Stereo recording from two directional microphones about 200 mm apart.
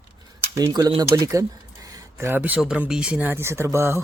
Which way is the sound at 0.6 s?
20° right (ahead or behind).